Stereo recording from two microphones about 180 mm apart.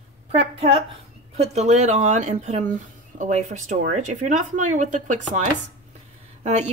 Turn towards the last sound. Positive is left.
turn(degrees=-40)  # may be behind; listen again after turning